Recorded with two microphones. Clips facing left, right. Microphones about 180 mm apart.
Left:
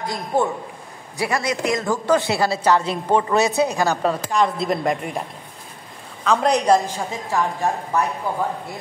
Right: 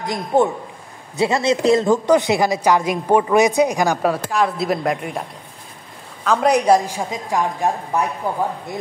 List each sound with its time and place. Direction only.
0.0 s a man's voice: 20° right (ahead or behind)
2.0 s a woman's voice: 15° right (ahead or behind); by 5.2 s centre (ahead or behind)
6.2 s a woman's voice: 5° right (ahead or behind)